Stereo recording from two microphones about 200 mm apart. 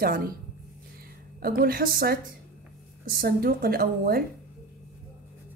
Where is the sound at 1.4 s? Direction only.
50° right (ahead or behind).